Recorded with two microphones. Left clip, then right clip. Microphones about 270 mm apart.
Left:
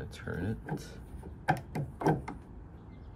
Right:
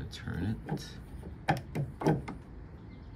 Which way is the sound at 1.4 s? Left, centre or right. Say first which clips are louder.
Left 1 dB; centre.